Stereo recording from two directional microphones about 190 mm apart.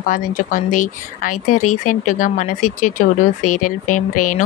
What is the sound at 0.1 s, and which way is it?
Speech, 45° left (ahead or behind).